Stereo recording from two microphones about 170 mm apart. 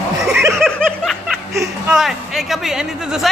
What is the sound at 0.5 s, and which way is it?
Snicker, centre (ahead or behind).